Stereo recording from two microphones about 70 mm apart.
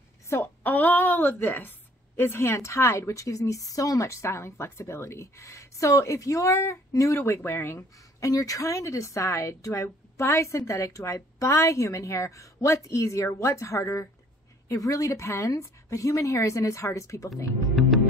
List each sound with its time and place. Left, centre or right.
0.3 s a woman's voice: left
8.3 s a woman's voice: left